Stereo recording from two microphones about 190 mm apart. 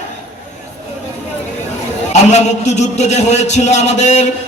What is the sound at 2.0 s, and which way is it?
A man's voice, 35° left (ahead or behind).